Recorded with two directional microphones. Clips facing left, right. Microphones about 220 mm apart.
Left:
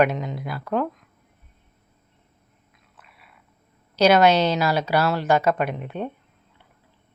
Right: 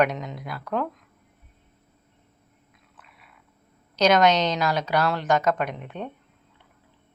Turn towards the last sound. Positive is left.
turn(degrees=5)  # may be behind; listen again after turning